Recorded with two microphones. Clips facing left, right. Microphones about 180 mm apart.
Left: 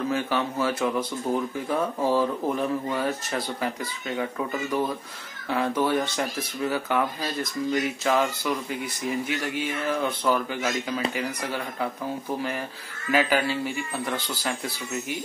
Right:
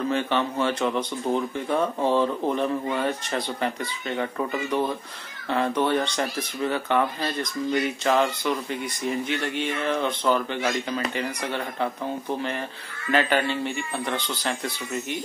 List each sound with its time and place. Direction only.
0.1 s speech: 5° left (ahead or behind)